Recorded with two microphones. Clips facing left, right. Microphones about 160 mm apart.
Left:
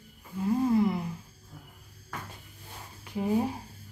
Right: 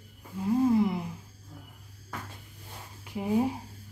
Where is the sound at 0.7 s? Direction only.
15° right (ahead or behind).